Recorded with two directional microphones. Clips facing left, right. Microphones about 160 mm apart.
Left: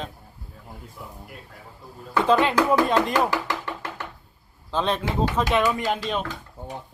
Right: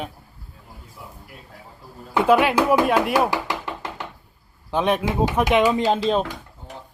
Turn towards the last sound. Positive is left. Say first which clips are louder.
# right 6 dB
turn(degrees=-35)  # may be behind; listen again after turning